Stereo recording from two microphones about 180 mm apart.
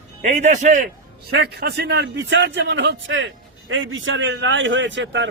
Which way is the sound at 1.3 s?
65° right (ahead or behind).